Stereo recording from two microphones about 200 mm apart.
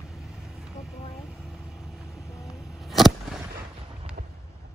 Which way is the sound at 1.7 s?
Centre (ahead or behind).